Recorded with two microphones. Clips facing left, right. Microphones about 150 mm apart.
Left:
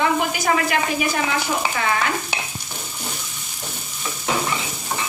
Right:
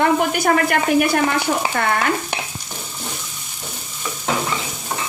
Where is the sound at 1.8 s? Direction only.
55° right (ahead or behind).